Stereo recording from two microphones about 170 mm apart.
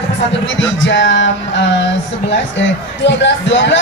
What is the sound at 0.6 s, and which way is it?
Speech, 90° left.